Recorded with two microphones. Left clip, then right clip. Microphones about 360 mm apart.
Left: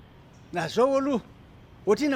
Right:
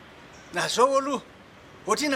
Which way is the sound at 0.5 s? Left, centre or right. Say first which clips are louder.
Right 2 dB; left.